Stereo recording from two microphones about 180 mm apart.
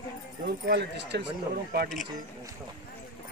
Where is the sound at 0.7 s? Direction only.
70° right (ahead or behind).